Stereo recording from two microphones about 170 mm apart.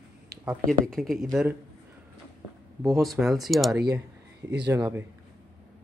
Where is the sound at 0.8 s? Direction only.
Centre (ahead or behind).